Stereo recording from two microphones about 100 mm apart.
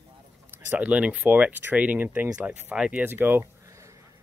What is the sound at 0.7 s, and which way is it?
Speech, 15° right (ahead or behind).